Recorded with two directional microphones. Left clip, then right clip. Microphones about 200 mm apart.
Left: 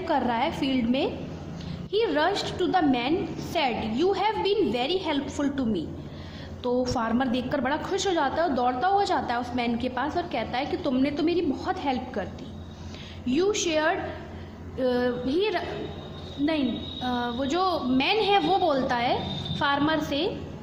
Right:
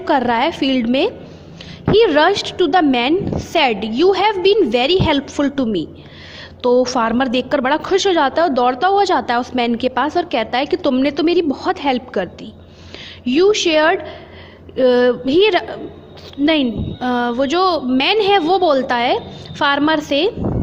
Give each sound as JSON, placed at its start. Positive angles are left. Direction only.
{"t": 0.0, "sound": "a woman's voice", "side_deg": -35}